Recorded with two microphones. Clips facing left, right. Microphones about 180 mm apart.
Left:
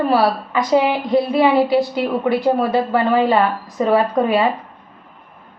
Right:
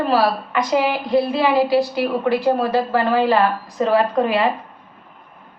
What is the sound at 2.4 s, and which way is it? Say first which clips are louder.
A woman's voice: left 1 dB; 20° left (ahead or behind).